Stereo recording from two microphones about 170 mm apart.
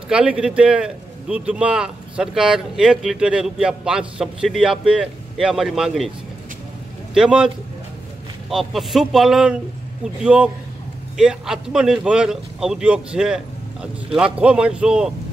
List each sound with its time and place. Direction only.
0.1 s a man's voice: 5° right (ahead or behind)
7.2 s a man's voice: 5° right (ahead or behind)